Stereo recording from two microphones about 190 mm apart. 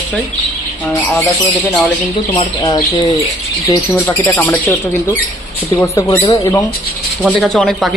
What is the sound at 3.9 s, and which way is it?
Speech, 10° left (ahead or behind).